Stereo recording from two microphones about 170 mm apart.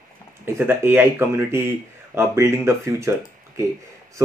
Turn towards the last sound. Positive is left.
turn(degrees=-15)  # may be behind; listen again after turning